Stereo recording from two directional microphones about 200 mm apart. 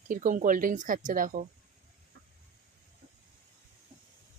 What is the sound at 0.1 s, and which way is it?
A woman's voice, 40° right (ahead or behind).